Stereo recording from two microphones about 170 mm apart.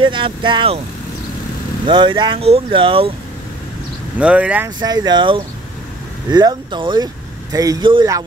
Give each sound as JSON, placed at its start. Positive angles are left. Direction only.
{"t": 0.0, "sound": "speech", "side_deg": -30}
{"t": 1.9, "sound": "speech", "side_deg": -25}
{"t": 4.2, "sound": "speech", "side_deg": -5}
{"t": 4.7, "sound": "speech", "side_deg": -25}